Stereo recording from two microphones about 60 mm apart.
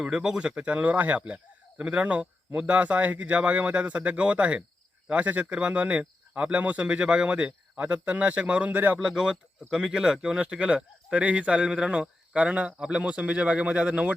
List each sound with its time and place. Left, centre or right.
0.0 s speech: centre
9.0 s speech: centre